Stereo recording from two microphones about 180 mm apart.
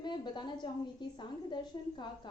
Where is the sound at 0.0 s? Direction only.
25° left (ahead or behind).